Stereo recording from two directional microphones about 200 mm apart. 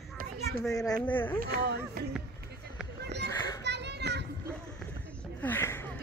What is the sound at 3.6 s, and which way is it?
Children playing, 60° right (ahead or behind).